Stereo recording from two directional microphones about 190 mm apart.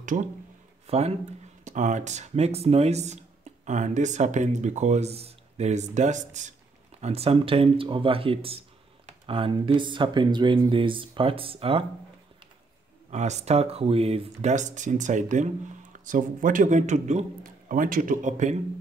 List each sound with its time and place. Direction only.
0.0 s speech: 45° right (ahead or behind)
13.1 s speech: 35° right (ahead or behind)